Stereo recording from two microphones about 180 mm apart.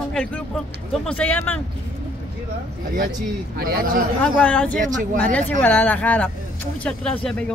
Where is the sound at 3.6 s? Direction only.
55° right (ahead or behind).